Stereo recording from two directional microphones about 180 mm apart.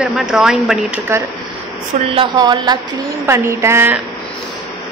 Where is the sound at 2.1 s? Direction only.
25° right (ahead or behind).